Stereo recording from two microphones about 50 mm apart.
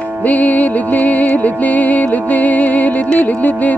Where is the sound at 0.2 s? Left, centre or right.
Left.